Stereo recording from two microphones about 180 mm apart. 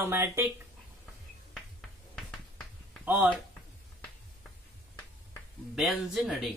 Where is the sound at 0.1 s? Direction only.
15° right (ahead or behind).